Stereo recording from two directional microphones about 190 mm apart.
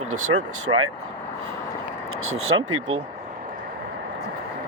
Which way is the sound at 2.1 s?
90° right.